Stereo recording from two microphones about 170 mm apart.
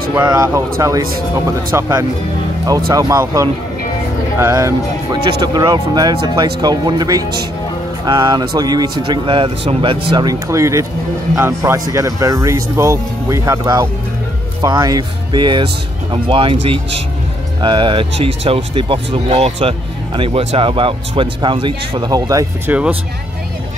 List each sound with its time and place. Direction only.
0.2 s speech: 20° right (ahead or behind)
22.7 s speech: 10° right (ahead or behind)